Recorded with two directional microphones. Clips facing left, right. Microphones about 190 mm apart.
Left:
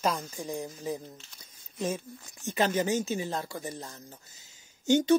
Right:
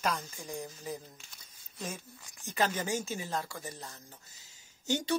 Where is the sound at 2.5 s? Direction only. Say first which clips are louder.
Left 5 dB; 25° left (ahead or behind).